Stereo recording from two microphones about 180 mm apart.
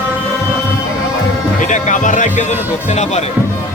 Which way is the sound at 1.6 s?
45° left (ahead or behind).